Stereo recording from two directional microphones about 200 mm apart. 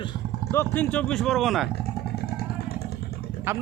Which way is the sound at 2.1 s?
50° left (ahead or behind).